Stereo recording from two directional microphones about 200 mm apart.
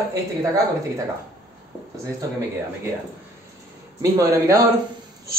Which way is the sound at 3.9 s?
15° right (ahead or behind).